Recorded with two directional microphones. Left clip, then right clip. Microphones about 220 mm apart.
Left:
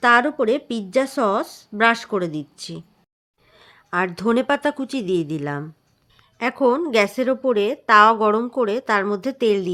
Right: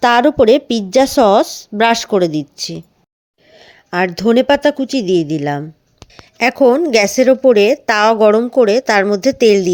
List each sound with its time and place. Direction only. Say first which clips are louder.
0.0 s a woman's voice: right 6 dB; 30° right (ahead or behind)